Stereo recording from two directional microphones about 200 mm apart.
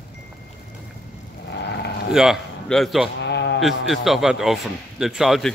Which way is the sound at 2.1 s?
Centre (ahead or behind).